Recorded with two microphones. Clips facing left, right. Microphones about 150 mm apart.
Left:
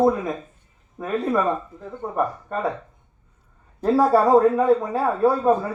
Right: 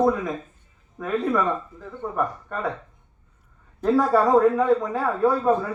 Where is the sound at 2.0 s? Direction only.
30° left (ahead or behind).